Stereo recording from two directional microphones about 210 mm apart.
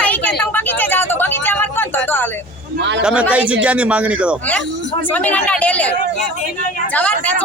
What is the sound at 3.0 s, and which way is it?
A man's voice, 5° right (ahead or behind).